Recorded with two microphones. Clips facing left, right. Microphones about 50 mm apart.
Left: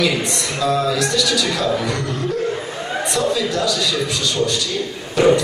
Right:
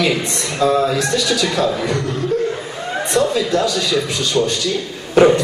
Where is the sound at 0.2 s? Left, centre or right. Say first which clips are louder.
Right 3 dB; right.